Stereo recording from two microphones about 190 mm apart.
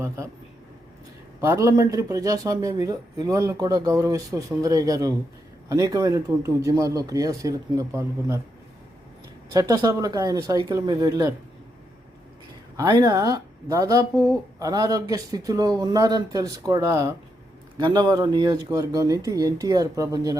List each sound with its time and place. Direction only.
1.4 s speech: 15° right (ahead or behind)
9.5 s speech: 20° right (ahead or behind)
12.7 s speech: 20° right (ahead or behind)